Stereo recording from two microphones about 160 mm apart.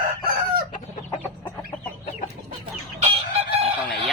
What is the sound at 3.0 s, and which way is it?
Chicken, 40° right (ahead or behind).